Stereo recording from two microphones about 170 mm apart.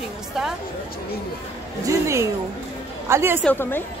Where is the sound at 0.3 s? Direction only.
Centre (ahead or behind).